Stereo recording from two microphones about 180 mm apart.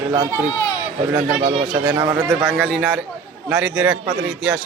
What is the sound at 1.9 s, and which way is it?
Speech, 15° right (ahead or behind).